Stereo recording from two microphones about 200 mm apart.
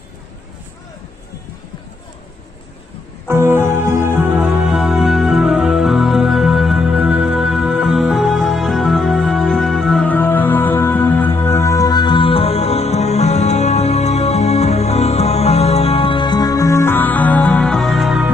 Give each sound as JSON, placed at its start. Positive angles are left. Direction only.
{"t": 3.2, "sound": "music", "side_deg": -10}